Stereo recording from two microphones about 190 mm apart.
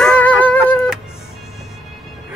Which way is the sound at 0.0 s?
5° left (ahead or behind).